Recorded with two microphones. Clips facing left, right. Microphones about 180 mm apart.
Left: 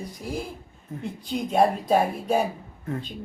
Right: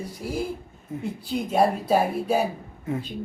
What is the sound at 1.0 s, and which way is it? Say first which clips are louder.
Speech: right 1 dB; 5° right (ahead or behind).